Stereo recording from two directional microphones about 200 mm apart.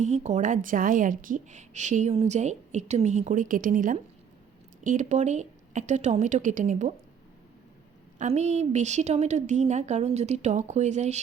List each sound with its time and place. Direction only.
0.0 s a woman's voice: 35° right (ahead or behind)
8.2 s a woman's voice: 35° right (ahead or behind)